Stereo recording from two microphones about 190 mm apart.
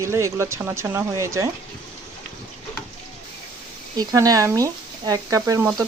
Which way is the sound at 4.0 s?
20° right (ahead or behind).